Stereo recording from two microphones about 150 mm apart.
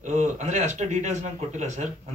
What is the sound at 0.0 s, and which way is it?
A man's voice, 55° right (ahead or behind).